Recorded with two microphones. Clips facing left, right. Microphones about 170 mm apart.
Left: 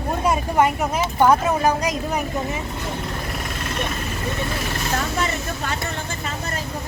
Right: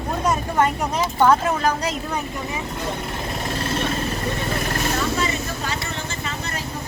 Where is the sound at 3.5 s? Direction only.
30° right (ahead or behind).